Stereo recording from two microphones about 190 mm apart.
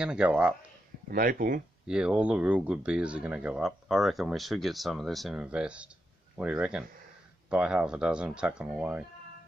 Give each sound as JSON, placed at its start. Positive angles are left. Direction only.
{"t": 0.0, "sound": "speech", "side_deg": -5}
{"t": 1.1, "sound": "speech", "side_deg": -50}
{"t": 1.9, "sound": "speech", "side_deg": -5}